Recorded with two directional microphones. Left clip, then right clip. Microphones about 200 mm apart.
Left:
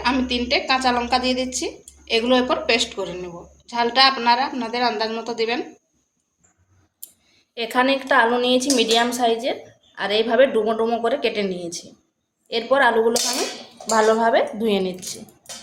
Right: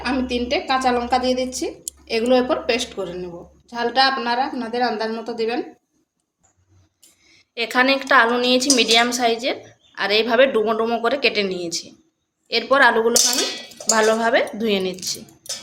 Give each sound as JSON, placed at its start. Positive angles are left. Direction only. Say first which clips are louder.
{"t": 0.3, "sound": "a woman's voice", "louder": "left 1 dB", "side_deg": -30}
{"t": 7.5, "sound": "a woman's voice", "louder": "right 2 dB", "side_deg": 0}